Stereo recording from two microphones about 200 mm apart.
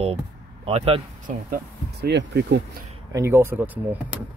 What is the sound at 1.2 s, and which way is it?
Speech, 50° right (ahead or behind).